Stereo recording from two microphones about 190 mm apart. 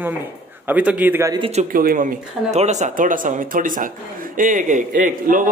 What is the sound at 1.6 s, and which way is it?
Speech, 45° right (ahead or behind).